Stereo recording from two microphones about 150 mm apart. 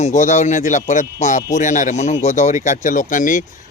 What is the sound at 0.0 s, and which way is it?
Speech, 55° left (ahead or behind).